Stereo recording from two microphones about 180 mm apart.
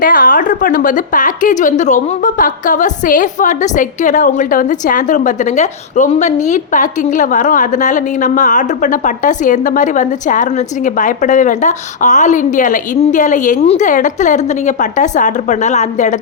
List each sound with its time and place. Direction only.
0.0 s a woman's voice: 50° left (ahead or behind)